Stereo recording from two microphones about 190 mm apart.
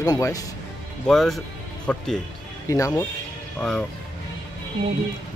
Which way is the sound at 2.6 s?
15° left (ahead or behind).